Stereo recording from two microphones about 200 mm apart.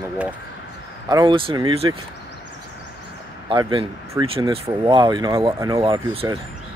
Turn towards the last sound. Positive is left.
turn(degrees=-25)  # may be behind; listen again after turning